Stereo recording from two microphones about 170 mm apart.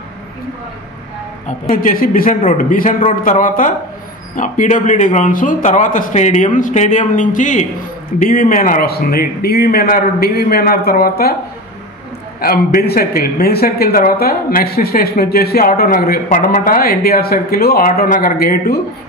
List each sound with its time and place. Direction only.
1.7 s a man's voice: 55° left (ahead or behind)
12.4 s speech: 65° left (ahead or behind)